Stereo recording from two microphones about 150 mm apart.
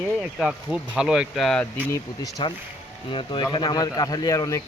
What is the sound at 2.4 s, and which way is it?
Speech, 35° left (ahead or behind).